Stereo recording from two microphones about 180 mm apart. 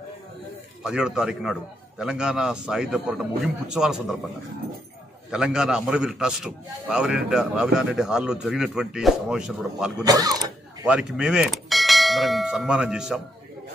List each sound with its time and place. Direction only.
0.8 s a man's voice: 5° right (ahead or behind)
5.3 s a man's voice: 5° right (ahead or behind)
10.0 s speech: 20° right (ahead or behind)
10.9 s bell: 5° right (ahead or behind)